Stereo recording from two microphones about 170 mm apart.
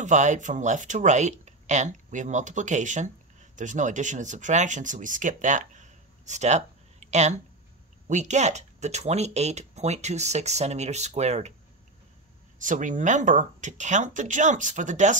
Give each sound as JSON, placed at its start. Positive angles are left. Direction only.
{"t": 0.0, "sound": "speech", "side_deg": -45}
{"t": 12.5, "sound": "speech", "side_deg": -50}